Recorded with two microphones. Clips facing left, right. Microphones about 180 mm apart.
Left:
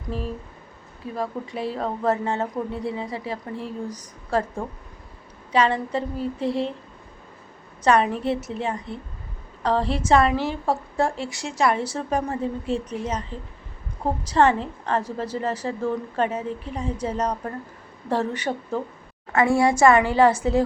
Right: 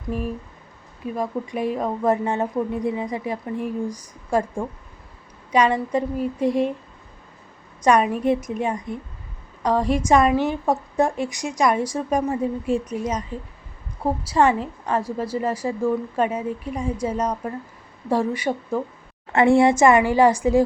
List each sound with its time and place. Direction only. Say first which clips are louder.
1.1 s a woman's voice: right 3 dB; 15° right (ahead or behind)
7.9 s a woman's voice: right 2 dB; 15° right (ahead or behind)
19.3 s a woman's voice: right 4 dB; 25° right (ahead or behind)